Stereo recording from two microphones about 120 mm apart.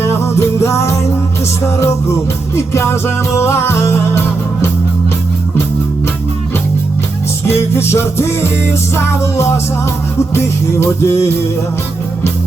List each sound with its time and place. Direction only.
0.0 s music: 20° left (ahead or behind)
7.4 s music: 20° left (ahead or behind)